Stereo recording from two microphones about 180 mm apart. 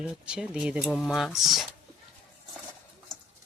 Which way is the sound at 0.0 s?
5° right (ahead or behind).